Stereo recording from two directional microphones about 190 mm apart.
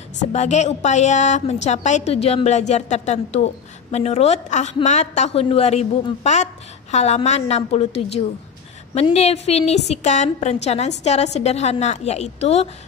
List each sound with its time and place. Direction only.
0.3 s a woman's voice: 35° left (ahead or behind)